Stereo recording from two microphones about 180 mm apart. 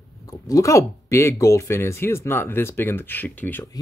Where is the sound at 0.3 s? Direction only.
20° left (ahead or behind).